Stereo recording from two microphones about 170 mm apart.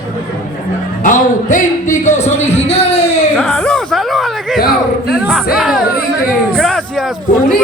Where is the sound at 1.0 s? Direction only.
50° left (ahead or behind).